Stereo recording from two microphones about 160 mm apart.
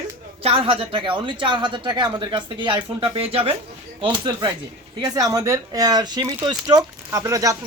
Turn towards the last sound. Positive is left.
turn(degrees=-20)  # may be behind; listen again after turning